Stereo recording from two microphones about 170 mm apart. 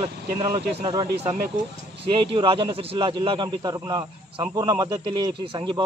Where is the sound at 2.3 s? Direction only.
30° right (ahead or behind).